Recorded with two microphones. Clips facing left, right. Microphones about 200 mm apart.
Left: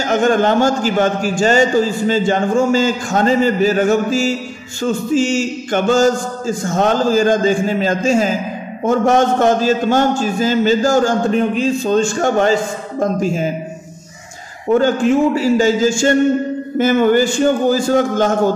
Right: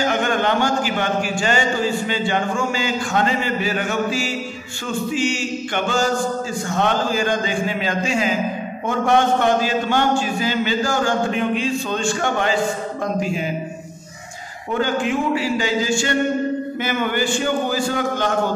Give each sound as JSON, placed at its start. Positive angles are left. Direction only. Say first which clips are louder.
{"t": 0.0, "sound": "a man's voice", "louder": "left 6 dB", "side_deg": 45}
{"t": 14.7, "sound": "a man's voice", "louder": "left 8 dB", "side_deg": 45}